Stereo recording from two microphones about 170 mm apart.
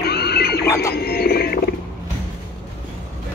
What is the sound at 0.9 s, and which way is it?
Wild animals, 65° left (ahead or behind).